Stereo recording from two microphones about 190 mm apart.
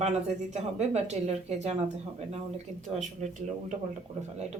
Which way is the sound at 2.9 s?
40° right (ahead or behind).